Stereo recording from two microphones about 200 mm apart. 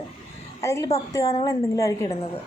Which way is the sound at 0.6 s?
15° left (ahead or behind).